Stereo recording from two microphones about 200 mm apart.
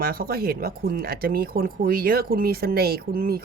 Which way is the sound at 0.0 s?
50° right (ahead or behind).